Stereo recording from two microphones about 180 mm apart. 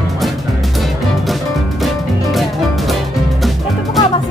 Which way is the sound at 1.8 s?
Centre (ahead or behind).